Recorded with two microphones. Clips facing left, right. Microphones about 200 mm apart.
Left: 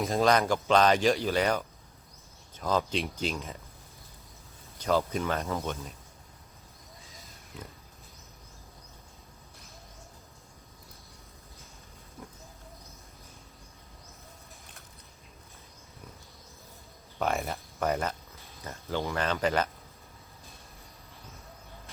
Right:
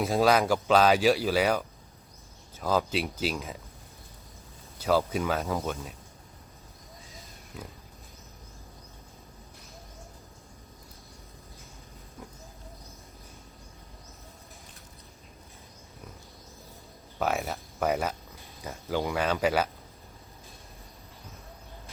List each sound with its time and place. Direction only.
0.0 s speech: 5° right (ahead or behind)
4.8 s speech: 5° right (ahead or behind)
17.2 s speech: 5° right (ahead or behind)